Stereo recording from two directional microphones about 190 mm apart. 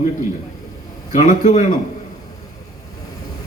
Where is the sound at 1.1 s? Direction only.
40° left (ahead or behind).